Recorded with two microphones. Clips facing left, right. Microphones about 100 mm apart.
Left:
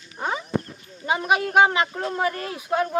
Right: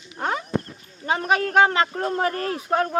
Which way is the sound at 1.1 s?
15° left (ahead or behind).